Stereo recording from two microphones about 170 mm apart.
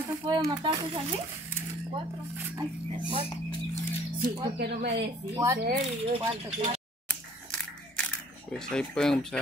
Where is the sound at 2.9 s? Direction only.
30° right (ahead or behind).